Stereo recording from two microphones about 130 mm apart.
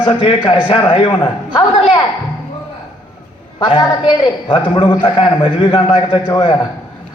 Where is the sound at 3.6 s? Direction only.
40° left (ahead or behind).